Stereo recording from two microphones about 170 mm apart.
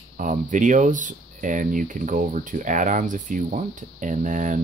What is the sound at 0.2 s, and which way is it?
Speech, 50° right (ahead or behind).